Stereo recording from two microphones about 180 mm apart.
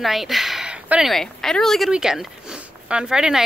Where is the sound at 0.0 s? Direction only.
Centre (ahead or behind).